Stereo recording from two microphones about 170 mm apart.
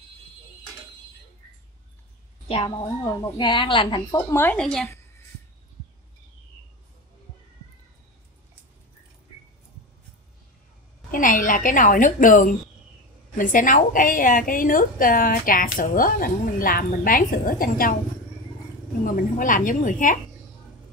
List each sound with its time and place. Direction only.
2.4 s a woman's voice: 30° left (ahead or behind); by 4.8 s 5° left (ahead or behind)
11.1 s a woman's voice: 50° left (ahead or behind)
19.0 s a woman's voice: 55° left (ahead or behind)